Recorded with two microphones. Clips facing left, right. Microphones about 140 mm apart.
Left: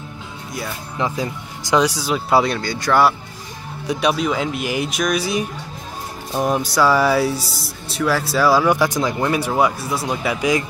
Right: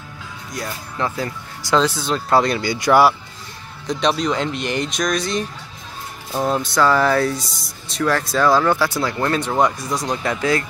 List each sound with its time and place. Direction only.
0.9 s speech: 15° left (ahead or behind)
2.6 s speech: 10° right (ahead or behind)
3.8 s speech: 10° left (ahead or behind)
7.4 s a man's voice: 35° left (ahead or behind)
7.9 s speech: 5° left (ahead or behind)